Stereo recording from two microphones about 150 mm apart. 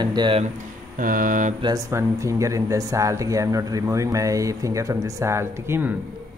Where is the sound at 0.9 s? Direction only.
65° right (ahead or behind).